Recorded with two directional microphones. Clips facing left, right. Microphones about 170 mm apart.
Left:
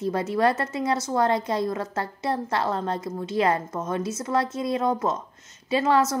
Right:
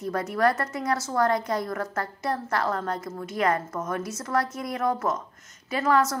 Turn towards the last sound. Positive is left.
turn(degrees=25)  # may be behind; listen again after turning